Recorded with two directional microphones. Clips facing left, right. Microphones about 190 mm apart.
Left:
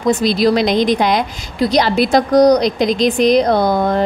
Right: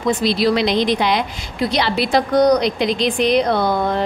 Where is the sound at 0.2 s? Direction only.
45° left (ahead or behind).